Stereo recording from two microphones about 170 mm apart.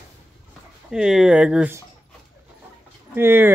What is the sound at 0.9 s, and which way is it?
Speech, 5° right (ahead or behind).